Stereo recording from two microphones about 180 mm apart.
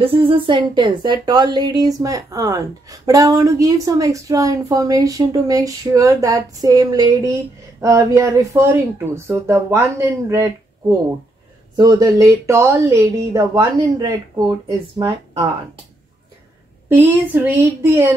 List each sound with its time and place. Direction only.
0.0 s speech: 30° right (ahead or behind)
11.7 s speech: 20° right (ahead or behind)
16.9 s speech: 10° right (ahead or behind)